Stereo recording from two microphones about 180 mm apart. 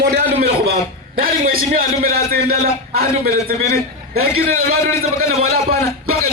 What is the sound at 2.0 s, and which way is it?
A man's voice, 55° right (ahead or behind).